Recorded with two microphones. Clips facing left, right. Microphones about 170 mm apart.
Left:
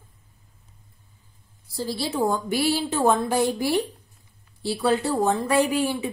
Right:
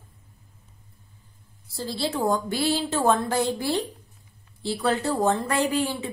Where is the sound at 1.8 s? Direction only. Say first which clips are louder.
Left 2 dB; 15° left (ahead or behind).